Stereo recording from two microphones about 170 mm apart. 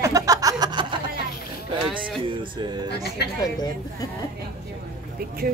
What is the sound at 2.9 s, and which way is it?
Speech, 70° left (ahead or behind).